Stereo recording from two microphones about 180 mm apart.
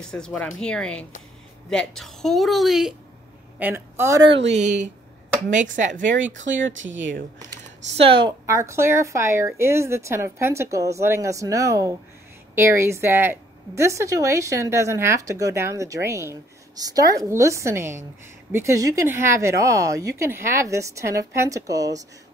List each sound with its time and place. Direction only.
0.0 s a woman's voice: 5° left (ahead or behind); by 4.3 s 15° right (ahead or behind)
4.5 s a woman's voice: 40° right (ahead or behind)
6.0 s speech: 90° right
8.0 s a woman's voice: 30° right (ahead or behind)
8.5 s speech: 15° right (ahead or behind)